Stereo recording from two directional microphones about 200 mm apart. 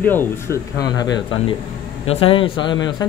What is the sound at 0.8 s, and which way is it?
A man's voice, 20° left (ahead or behind).